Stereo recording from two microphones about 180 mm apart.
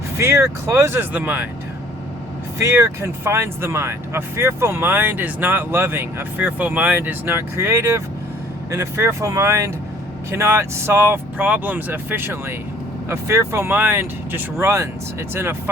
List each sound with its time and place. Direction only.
0.2 s speech: 15° right (ahead or behind)
2.6 s speech: 15° right (ahead or behind)